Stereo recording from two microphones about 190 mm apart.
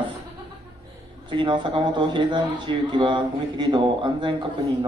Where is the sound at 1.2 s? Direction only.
25° right (ahead or behind).